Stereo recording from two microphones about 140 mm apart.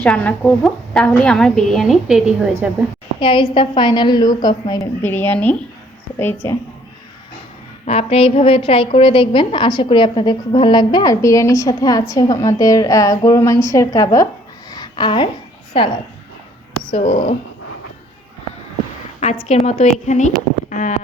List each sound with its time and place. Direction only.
0.0 s a woman's voice: 10° left (ahead or behind)
3.2 s a woman's voice: 35° left (ahead or behind)
5.0 s speech: 15° left (ahead or behind)
7.9 s a woman's voice: 45° left (ahead or behind); by 14.3 s 25° left (ahead or behind)
14.7 s a sound: 30° left (ahead or behind)
15.7 s a woman's voice: 40° left (ahead or behind)
16.9 s speech: 50° left (ahead or behind)
19.5 s a woman's voice: 50° left (ahead or behind)